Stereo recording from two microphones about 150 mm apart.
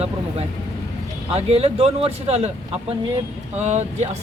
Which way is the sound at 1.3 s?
40° right (ahead or behind).